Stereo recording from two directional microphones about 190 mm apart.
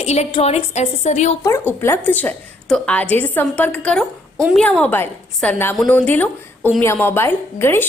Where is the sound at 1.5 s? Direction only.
15° left (ahead or behind).